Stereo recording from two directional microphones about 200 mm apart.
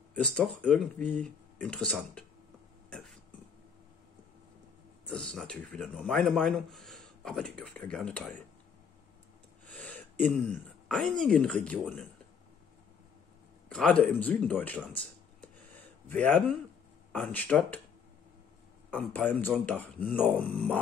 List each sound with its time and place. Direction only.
0.1 s speech: 5° left (ahead or behind)
2.9 s burping: centre (ahead or behind)
5.1 s speech: centre (ahead or behind)
9.7 s speech: 5° left (ahead or behind)
13.7 s speech: 5° left (ahead or behind)
15.4 s a sound: 10° left (ahead or behind)
17.1 s speech: 10° left (ahead or behind)
18.9 s a man's voice: 10° left (ahead or behind)